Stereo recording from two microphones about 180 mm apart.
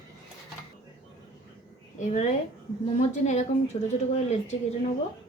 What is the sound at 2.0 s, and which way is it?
Speech, 40° left (ahead or behind).